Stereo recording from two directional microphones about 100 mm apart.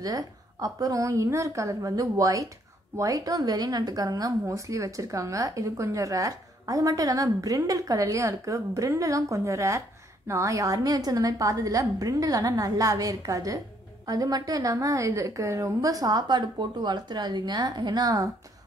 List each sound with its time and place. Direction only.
0.0 s speech: 35° right (ahead or behind)